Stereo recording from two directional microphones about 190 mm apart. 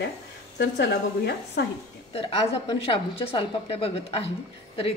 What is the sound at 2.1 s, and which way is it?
A woman's voice, 30° left (ahead or behind).